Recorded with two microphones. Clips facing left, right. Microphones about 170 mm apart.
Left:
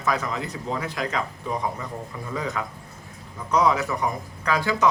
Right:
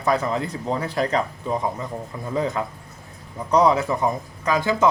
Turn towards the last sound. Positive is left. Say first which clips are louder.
# right 3 dB
turn(degrees=-20)  # may be behind; listen again after turning